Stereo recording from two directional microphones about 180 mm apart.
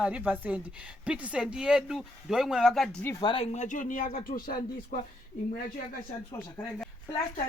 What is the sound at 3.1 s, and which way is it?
Speech, 25° left (ahead or behind).